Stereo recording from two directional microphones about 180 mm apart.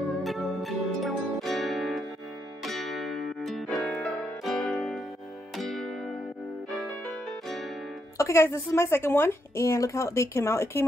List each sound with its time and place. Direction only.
0.2 s music: centre (ahead or behind)
8.2 s a woman's voice: 15° left (ahead or behind)